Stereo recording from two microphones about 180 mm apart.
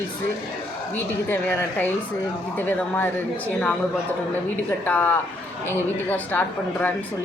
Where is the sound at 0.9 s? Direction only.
10° left (ahead or behind).